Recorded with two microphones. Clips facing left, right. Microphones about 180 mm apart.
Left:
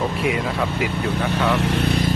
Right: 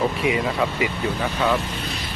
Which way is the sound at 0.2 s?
Centre (ahead or behind).